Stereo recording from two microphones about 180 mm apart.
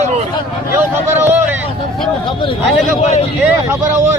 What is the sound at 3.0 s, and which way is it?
Speech, 35° left (ahead or behind).